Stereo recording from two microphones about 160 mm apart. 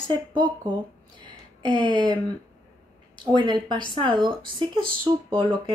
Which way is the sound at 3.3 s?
30° right (ahead or behind).